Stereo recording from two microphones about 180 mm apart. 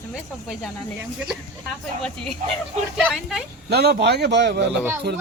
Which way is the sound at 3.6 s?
65° right (ahead or behind).